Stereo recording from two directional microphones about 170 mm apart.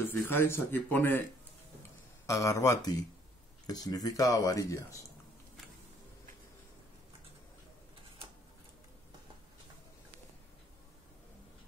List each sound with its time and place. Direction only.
0.3 s speech: 15° left (ahead or behind)
2.2 s speech: 20° left (ahead or behind)